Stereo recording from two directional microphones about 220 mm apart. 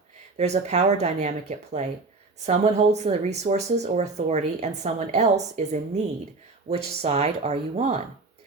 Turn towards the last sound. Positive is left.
turn(degrees=-30)  # may be behind; listen again after turning